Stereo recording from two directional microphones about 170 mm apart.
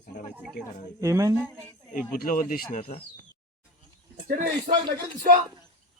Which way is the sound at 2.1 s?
55° left (ahead or behind).